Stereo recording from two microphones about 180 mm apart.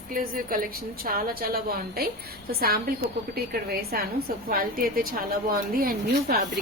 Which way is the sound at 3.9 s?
55° right (ahead or behind).